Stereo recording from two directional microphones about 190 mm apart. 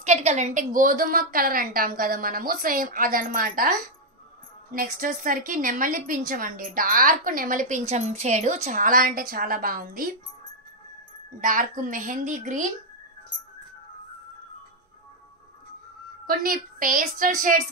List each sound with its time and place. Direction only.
0.0 s a woman's voice: 35° right (ahead or behind)
4.7 s a woman's voice: 45° right (ahead or behind)
11.4 s a woman's voice: 45° right (ahead or behind)
16.3 s a woman's voice: 50° right (ahead or behind)